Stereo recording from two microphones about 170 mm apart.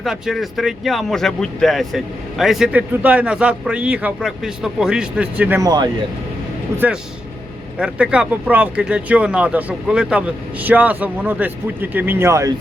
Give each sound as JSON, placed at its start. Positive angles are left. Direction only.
{"t": 0.0, "sound": "speech", "side_deg": 0}
{"t": 5.6, "sound": "speech", "side_deg": -25}
{"t": 6.7, "sound": "speech", "side_deg": -10}